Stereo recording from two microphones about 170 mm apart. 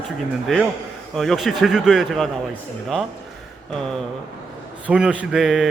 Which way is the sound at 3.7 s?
5° left (ahead or behind).